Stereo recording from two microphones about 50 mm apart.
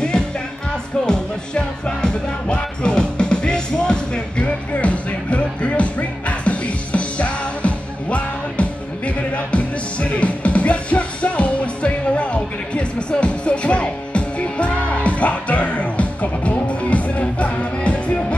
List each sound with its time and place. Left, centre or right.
1.0 s music: centre